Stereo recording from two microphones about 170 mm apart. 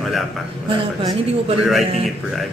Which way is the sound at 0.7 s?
35° right (ahead or behind).